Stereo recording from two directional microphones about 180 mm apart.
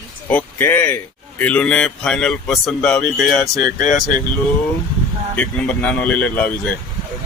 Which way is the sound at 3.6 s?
45° left (ahead or behind).